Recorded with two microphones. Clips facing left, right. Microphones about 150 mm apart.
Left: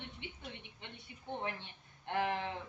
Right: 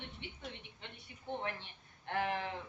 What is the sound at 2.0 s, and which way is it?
Speech, 20° left (ahead or behind).